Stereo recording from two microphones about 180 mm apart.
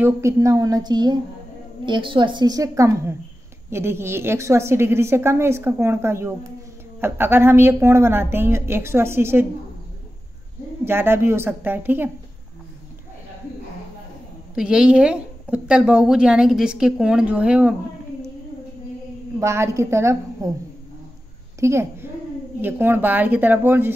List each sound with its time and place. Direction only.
0.0 s a woman's voice: 15° right (ahead or behind)
10.9 s a woman's voice: 15° right (ahead or behind)
14.5 s speech: 5° right (ahead or behind)
19.4 s a woman's voice: 15° right (ahead or behind)
21.5 s a woman's voice: 15° right (ahead or behind)